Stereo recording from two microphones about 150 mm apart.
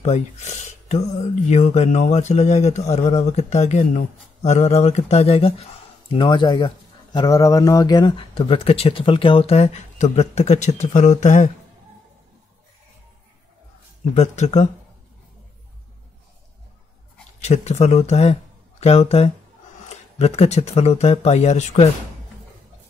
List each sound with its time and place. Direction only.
0.0 s speech: 50° left (ahead or behind)
14.1 s speech: 50° left (ahead or behind)
17.4 s speech: 50° left (ahead or behind)